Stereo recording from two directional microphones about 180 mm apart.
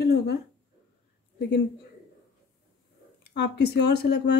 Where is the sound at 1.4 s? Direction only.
70° left (ahead or behind).